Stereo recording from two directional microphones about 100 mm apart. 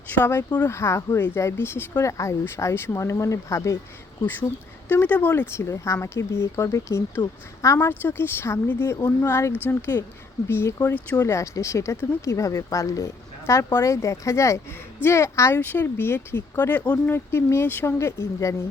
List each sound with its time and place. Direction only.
0.1 s speech: 20° left (ahead or behind)
4.9 s speech: 15° left (ahead or behind)